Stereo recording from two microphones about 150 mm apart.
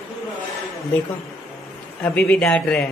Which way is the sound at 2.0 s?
10° left (ahead or behind).